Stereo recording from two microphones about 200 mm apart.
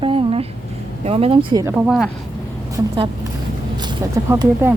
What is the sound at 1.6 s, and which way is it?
Speech, 5° right (ahead or behind).